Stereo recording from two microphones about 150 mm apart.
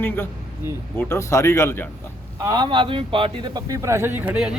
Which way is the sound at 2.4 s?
30° right (ahead or behind).